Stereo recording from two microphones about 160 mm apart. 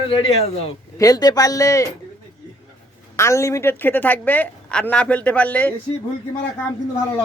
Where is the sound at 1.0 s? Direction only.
25° left (ahead or behind).